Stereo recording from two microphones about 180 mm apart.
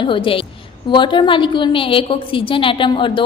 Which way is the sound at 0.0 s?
30° left (ahead or behind).